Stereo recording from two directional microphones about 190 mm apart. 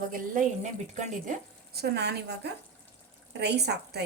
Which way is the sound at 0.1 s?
40° right (ahead or behind).